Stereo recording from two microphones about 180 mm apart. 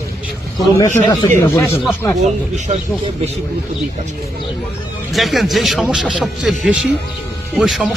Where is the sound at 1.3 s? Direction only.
10° left (ahead or behind).